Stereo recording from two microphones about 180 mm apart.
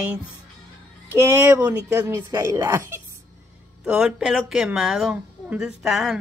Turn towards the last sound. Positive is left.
turn(degrees=0)  # may be behind; listen again after turning